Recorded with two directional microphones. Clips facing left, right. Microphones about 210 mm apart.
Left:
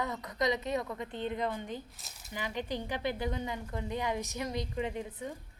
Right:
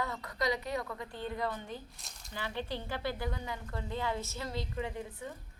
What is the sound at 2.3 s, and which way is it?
A woman's voice, 15° left (ahead or behind).